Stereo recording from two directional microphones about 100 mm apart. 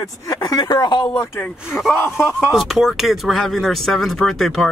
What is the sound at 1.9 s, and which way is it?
Speech, 25° left (ahead or behind).